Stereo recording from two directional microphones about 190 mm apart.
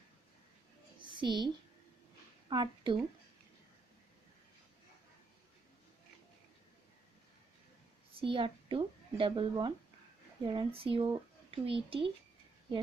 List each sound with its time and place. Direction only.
0.9 s a sound: 25° right (ahead or behind)
2.5 s speech: 25° right (ahead or behind)
8.1 s speech: 30° right (ahead or behind)